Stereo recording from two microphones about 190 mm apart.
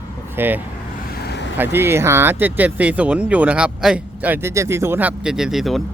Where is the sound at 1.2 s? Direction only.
60° left (ahead or behind).